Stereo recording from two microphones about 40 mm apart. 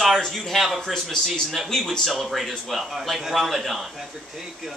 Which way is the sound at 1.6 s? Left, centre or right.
Centre.